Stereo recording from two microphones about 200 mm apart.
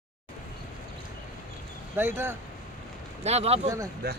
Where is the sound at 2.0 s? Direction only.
10° right (ahead or behind).